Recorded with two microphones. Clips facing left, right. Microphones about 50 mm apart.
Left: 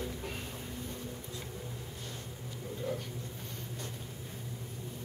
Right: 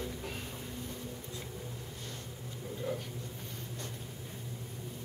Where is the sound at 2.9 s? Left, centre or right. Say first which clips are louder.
Even; centre.